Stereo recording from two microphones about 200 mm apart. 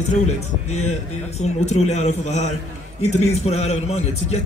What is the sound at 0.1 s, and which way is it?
A man's voice, 35° left (ahead or behind).